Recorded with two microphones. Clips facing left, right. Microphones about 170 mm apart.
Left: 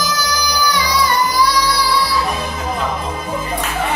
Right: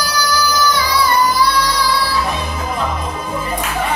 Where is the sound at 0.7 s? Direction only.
15° left (ahead or behind).